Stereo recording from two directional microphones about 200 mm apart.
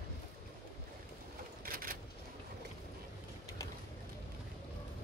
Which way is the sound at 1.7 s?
45° right (ahead or behind).